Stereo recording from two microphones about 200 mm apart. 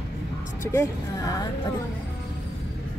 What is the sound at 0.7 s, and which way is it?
Speech, 15° left (ahead or behind).